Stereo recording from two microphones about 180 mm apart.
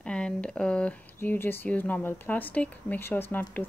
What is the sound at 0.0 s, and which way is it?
Speech, 5° left (ahead or behind).